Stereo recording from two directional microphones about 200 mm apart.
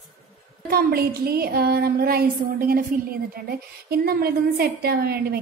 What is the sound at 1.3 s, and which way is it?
A woman's voice, 50° right (ahead or behind).